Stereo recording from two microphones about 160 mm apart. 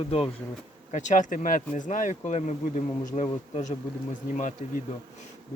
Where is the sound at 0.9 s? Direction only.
50° left (ahead or behind).